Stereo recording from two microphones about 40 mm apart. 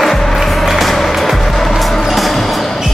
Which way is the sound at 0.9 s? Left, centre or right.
Centre.